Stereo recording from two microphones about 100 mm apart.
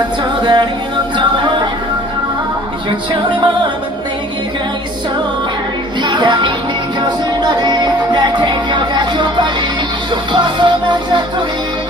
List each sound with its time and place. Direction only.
0.2 s music: 45° right (ahead or behind)
3.1 s music: 55° right (ahead or behind)
6.0 s music: 50° right (ahead or behind)